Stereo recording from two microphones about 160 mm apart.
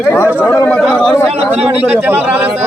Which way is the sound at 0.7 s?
5° left (ahead or behind).